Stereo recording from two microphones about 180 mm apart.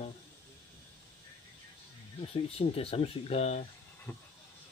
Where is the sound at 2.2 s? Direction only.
35° left (ahead or behind).